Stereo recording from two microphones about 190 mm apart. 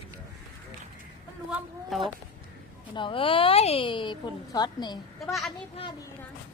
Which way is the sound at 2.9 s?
25° left (ahead or behind).